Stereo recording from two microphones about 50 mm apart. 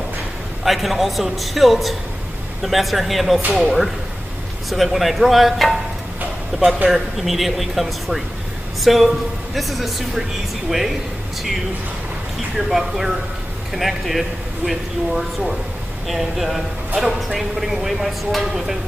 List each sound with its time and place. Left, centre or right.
0.7 s speech: centre
6.5 s a man's voice: centre
6.9 s speech: centre
12.5 s speech: centre